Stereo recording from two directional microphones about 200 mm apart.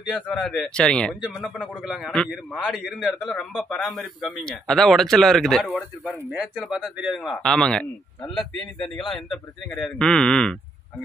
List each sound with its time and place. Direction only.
0.1 s a man's voice: centre (ahead or behind)
8.3 s speech: 20° left (ahead or behind)
9.1 s a man's voice: centre (ahead or behind)